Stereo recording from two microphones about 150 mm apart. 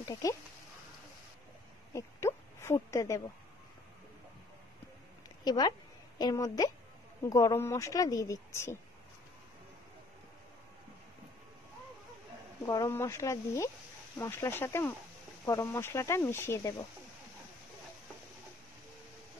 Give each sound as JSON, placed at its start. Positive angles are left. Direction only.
{"t": 0.0, "sound": "speech", "side_deg": 20}
{"t": 2.0, "sound": "a sound", "side_deg": 15}
{"t": 5.4, "sound": "a woman's voice", "side_deg": 25}
{"t": 12.6, "sound": "speech", "side_deg": 20}